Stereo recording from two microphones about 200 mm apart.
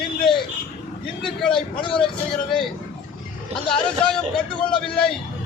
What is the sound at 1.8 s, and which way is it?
Speech, 25° left (ahead or behind).